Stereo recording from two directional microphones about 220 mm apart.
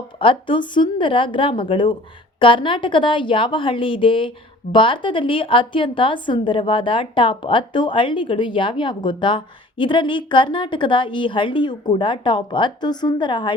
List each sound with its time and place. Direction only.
0.2 s a woman's voice: 25° left (ahead or behind)